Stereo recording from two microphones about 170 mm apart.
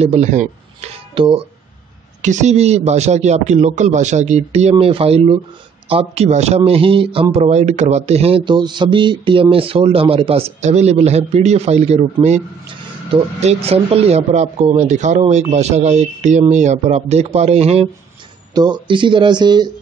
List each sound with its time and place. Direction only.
0.0 s speech: 40° right (ahead or behind)
1.1 s speech: 35° right (ahead or behind)
2.2 s speech: 45° right (ahead or behind)
18.5 s speech: 25° right (ahead or behind)